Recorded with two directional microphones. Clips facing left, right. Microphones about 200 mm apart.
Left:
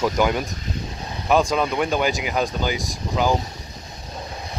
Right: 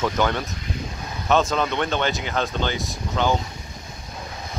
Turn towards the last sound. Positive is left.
turn(degrees=5)  # may be behind; listen again after turning